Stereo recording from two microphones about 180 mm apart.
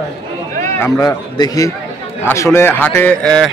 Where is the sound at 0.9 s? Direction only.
20° left (ahead or behind).